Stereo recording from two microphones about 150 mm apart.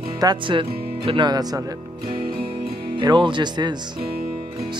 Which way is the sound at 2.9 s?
30° right (ahead or behind).